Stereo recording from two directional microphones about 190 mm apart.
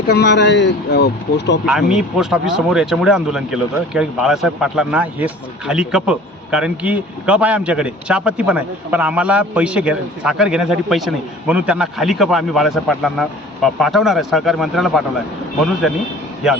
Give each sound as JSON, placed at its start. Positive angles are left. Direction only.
{"t": 0.1, "sound": "speech", "side_deg": 65}
{"t": 1.6, "sound": "speech", "side_deg": -5}